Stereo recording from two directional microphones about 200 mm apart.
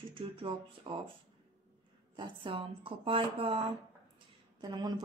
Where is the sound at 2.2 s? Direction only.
25° right (ahead or behind).